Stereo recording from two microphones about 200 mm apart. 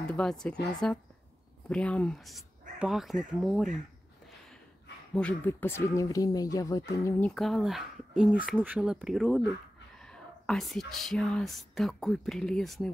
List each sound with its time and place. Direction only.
0.1 s speech: 5° left (ahead or behind)
1.7 s speech: 5° left (ahead or behind)
5.1 s speech: 5° left (ahead or behind)
7.1 s speech: 5° left (ahead or behind)